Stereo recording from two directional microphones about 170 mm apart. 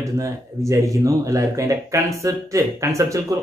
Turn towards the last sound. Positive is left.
turn(degrees=-20)  # may be behind; listen again after turning